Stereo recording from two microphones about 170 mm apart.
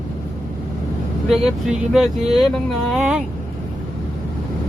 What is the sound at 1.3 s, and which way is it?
Speech, centre (ahead or behind).